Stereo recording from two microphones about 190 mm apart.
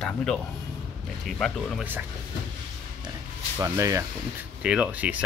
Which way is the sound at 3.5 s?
15° right (ahead or behind).